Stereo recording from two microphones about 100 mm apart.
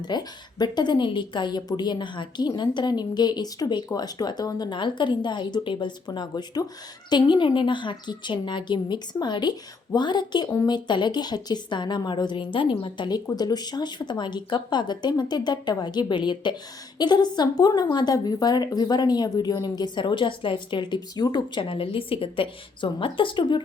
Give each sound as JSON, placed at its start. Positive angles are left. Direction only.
{"t": 0.0, "sound": "speech", "side_deg": 45}
{"t": 13.3, "sound": "speech", "side_deg": 40}